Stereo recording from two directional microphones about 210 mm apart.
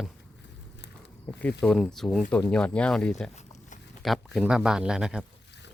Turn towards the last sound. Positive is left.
turn(degrees=-5)  # may be behind; listen again after turning